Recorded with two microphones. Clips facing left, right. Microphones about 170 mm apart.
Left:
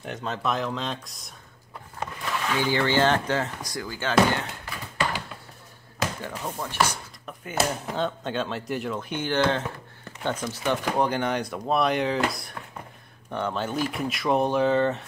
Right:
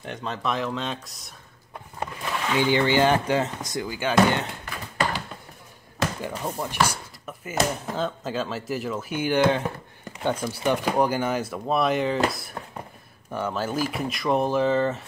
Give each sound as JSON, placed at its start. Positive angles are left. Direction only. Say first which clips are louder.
{"t": 0.0, "sound": "speech", "louder": "even", "side_deg": 0}
{"t": 2.5, "sound": "speech", "louder": "right 3 dB", "side_deg": -15}
{"t": 6.2, "sound": "speech", "louder": "right 3 dB", "side_deg": -15}